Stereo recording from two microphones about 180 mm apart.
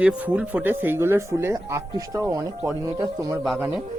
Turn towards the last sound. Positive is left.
turn(degrees=-20)  # may be behind; listen again after turning